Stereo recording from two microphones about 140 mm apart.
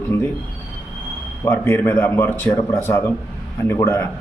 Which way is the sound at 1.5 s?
15° left (ahead or behind).